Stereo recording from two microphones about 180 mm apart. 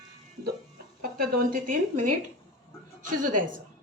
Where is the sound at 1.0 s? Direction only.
55° right (ahead or behind).